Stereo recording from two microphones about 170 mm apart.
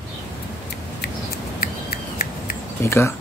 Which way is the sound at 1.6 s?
60° left (ahead or behind).